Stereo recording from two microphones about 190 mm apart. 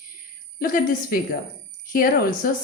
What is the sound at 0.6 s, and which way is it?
A woman's voice, 50° left (ahead or behind).